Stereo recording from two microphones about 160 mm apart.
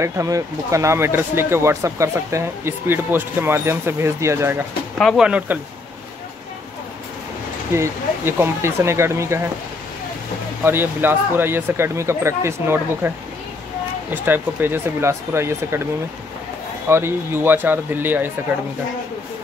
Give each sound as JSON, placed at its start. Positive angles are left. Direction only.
{"t": 0.0, "sound": "speech", "side_deg": -20}
{"t": 4.9, "sound": "speech", "side_deg": 0}
{"t": 7.7, "sound": "speech", "side_deg": -15}
{"t": 10.6, "sound": "speech", "side_deg": -15}
{"t": 14.1, "sound": "speech", "side_deg": -10}
{"t": 16.9, "sound": "speech", "side_deg": -15}